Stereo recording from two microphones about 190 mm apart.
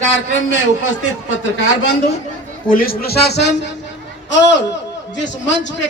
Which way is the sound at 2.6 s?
50° left (ahead or behind).